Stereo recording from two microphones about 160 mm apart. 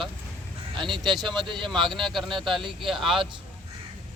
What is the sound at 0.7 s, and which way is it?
Speech, 30° right (ahead or behind).